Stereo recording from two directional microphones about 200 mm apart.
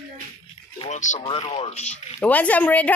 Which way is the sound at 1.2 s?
25° left (ahead or behind).